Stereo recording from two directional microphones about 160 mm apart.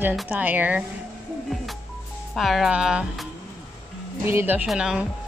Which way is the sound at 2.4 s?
Centre (ahead or behind).